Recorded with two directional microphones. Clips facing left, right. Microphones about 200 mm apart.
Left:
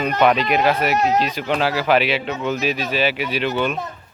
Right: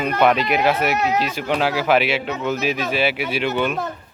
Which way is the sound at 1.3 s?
10° right (ahead or behind).